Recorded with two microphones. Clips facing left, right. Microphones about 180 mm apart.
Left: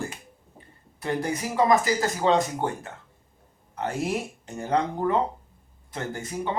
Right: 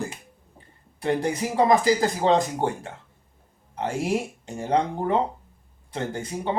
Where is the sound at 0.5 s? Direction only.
30° right (ahead or behind).